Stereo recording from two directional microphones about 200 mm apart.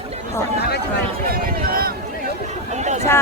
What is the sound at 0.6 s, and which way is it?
Speech, 55° left (ahead or behind).